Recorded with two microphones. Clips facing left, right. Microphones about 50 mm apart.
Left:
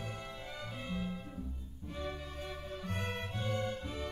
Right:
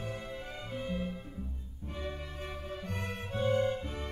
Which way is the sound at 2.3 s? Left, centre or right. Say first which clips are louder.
Right 2 dB; right.